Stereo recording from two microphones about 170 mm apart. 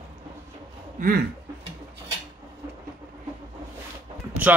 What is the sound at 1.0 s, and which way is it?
Speech, 50° right (ahead or behind).